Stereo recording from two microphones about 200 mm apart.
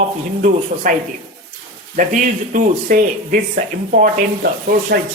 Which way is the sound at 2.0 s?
40° right (ahead or behind).